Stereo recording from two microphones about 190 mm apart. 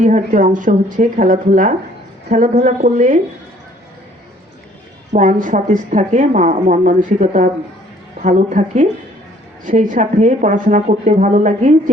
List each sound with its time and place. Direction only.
0.0 s speech: 40° right (ahead or behind)
5.1 s speech: 40° right (ahead or behind)